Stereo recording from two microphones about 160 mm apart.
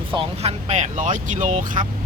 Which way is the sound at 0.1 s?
40° right (ahead or behind).